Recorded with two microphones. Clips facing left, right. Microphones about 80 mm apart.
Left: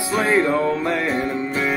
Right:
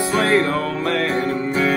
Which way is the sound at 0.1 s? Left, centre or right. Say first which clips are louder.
Left 1 dB; centre.